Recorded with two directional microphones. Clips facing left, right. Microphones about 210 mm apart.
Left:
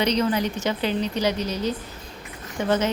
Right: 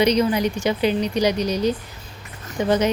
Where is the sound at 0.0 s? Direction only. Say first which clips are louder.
Right 4 dB; 10° right (ahead or behind).